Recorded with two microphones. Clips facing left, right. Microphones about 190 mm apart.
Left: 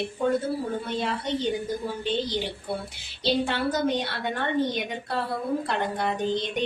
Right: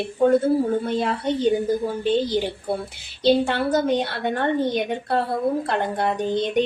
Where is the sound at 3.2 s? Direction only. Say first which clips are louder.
Right 6 dB; 50° right (ahead or behind).